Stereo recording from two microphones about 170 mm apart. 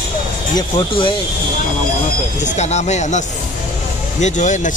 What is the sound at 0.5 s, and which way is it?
Speech, 30° left (ahead or behind).